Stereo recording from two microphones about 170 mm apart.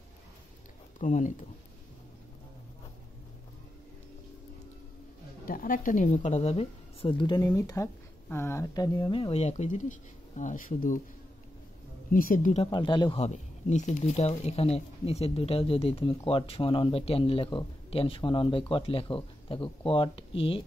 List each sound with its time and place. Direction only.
0.9 s speech: 45° left (ahead or behind)
5.4 s speech: 55° left (ahead or behind)
12.1 s speech: 55° left (ahead or behind)
12.6 s speech: 25° left (ahead or behind)
13.2 s speech: 40° left (ahead or behind)